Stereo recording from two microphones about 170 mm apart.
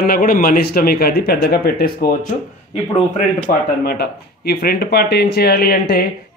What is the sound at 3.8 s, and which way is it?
Speech, 70° left (ahead or behind).